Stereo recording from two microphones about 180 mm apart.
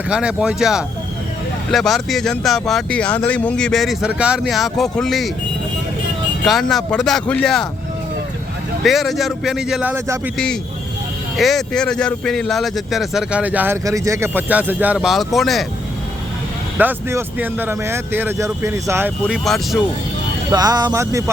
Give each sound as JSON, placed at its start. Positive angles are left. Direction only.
{"t": 0.1, "sound": "speech", "side_deg": -5}
{"t": 6.4, "sound": "speech", "side_deg": 0}
{"t": 8.8, "sound": "speech", "side_deg": 0}
{"t": 10.3, "sound": "speech", "side_deg": 5}
{"t": 16.7, "sound": "speech", "side_deg": -10}
{"t": 19.3, "sound": "speech", "side_deg": 0}
{"t": 20.5, "sound": "speech", "side_deg": -20}